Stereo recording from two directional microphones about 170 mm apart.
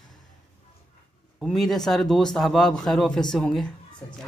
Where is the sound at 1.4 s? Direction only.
Centre (ahead or behind).